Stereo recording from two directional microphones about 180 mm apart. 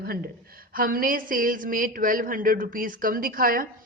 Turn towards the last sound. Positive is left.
turn(degrees=-50)  # may be behind; listen again after turning